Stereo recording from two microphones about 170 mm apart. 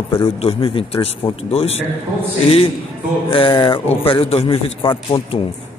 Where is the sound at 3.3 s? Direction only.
30° left (ahead or behind).